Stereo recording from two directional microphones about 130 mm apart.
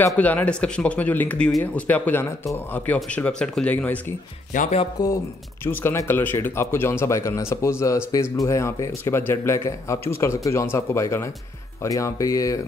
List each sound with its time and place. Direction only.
0.0 s speech: 10° left (ahead or behind)
4.5 s music: 90° left
5.0 s speech: 30° left (ahead or behind)
5.7 s speech: 15° left (ahead or behind)